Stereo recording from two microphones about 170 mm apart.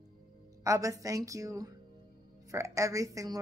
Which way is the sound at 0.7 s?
20° right (ahead or behind).